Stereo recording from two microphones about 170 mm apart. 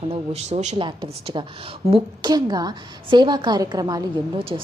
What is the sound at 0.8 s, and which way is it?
A woman's voice, 30° right (ahead or behind).